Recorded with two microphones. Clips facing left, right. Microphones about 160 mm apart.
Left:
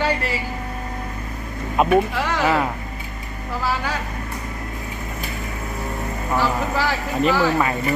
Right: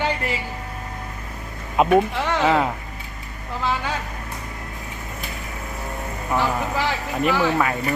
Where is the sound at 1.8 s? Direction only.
20° right (ahead or behind).